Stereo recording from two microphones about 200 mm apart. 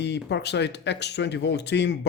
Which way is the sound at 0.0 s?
60° left (ahead or behind).